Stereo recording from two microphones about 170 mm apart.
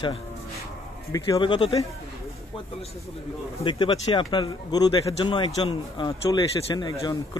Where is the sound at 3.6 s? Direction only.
30° left (ahead or behind).